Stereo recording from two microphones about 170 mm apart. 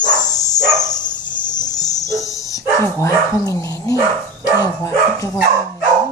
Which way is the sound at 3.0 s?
20° left (ahead or behind).